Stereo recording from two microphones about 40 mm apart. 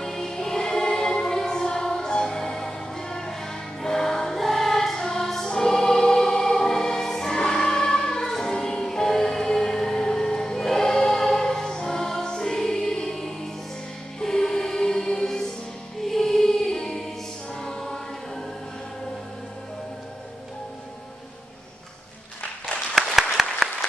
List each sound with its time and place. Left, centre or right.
0.0 s music: centre
17.6 s choir: centre
22.9 s applause: centre